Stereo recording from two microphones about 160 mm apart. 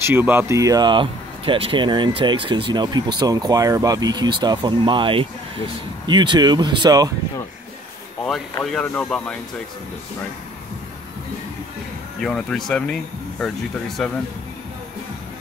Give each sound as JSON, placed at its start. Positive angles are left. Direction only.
{"t": 0.0, "sound": "speech", "side_deg": -15}
{"t": 8.2, "sound": "speech", "side_deg": 5}
{"t": 12.2, "sound": "speech", "side_deg": 5}